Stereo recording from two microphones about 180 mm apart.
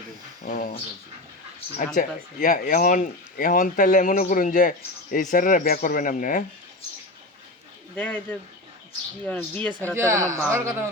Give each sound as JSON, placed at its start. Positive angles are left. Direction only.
{"t": 0.4, "sound": "speech", "side_deg": 50}
{"t": 1.8, "sound": "speech", "side_deg": 45}
{"t": 7.9, "sound": "speech", "side_deg": 10}
{"t": 9.9, "sound": "a man's voice", "side_deg": -15}